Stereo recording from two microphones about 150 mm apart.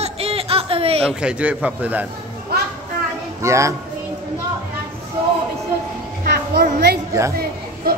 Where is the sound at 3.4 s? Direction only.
20° right (ahead or behind).